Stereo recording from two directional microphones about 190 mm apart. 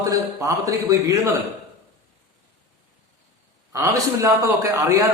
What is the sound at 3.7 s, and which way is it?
A man's voice, 15° right (ahead or behind).